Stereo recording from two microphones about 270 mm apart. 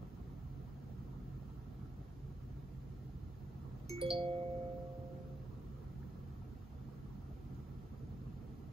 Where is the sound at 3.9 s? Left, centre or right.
Centre.